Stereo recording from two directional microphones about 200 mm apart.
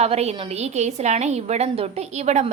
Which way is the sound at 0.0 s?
30° right (ahead or behind).